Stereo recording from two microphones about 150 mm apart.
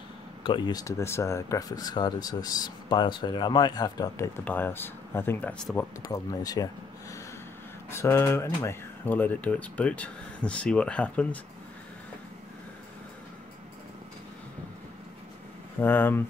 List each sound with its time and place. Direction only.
0.4 s speech: 30° left (ahead or behind)
4.5 s speech: 15° left (ahead or behind)
6.0 s speech: 25° left (ahead or behind); by 11.2 s 10° left (ahead or behind)
15.8 s speech: 15° left (ahead or behind)